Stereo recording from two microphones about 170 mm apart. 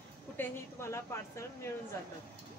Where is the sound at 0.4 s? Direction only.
15° left (ahead or behind).